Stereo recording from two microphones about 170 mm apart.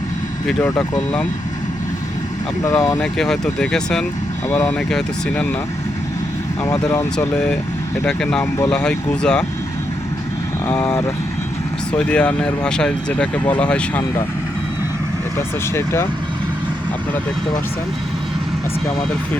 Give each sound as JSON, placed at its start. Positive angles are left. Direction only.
{"t": 0.6, "sound": "speech", "side_deg": 10}
{"t": 2.6, "sound": "speech", "side_deg": 20}
{"t": 3.0, "sound": "speech", "side_deg": 5}
{"t": 4.4, "sound": "speech", "side_deg": 15}
{"t": 6.6, "sound": "speech", "side_deg": 15}
{"t": 8.0, "sound": "speech", "side_deg": 5}
{"t": 10.7, "sound": "speech", "side_deg": 10}
{"t": 15.4, "sound": "speech", "side_deg": 15}